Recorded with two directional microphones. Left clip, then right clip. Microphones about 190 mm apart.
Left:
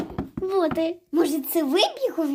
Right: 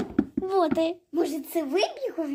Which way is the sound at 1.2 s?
65° left (ahead or behind).